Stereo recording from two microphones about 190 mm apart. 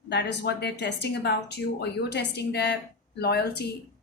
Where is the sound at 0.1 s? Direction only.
60° left (ahead or behind).